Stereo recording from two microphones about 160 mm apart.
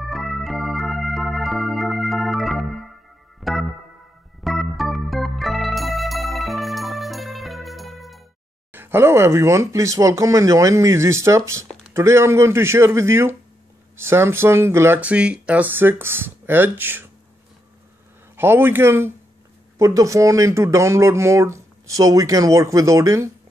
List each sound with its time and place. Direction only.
0.0 s organ: centre (ahead or behind)
3.3 s music: centre (ahead or behind)
4.4 s organ: centre (ahead or behind)
8.7 s speech: 15° right (ahead or behind)
18.3 s speech: 15° right (ahead or behind)